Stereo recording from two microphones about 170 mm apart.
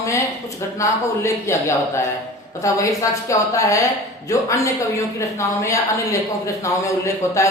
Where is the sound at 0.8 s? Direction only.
15° left (ahead or behind).